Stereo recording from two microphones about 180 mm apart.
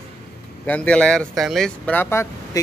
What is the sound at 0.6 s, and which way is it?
Speech, 10° left (ahead or behind).